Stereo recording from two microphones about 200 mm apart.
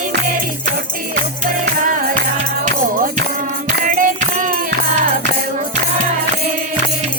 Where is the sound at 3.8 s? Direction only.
40° right (ahead or behind).